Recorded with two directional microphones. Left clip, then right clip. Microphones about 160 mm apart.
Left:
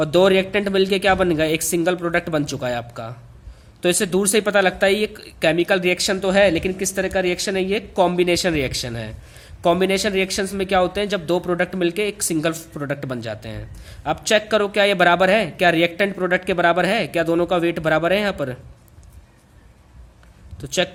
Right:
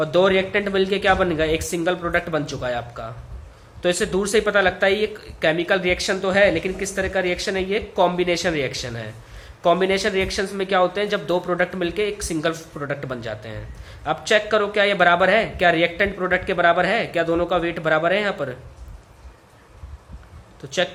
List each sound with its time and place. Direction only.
0.0 s speech: 55° left (ahead or behind)
20.6 s speech: 55° left (ahead or behind)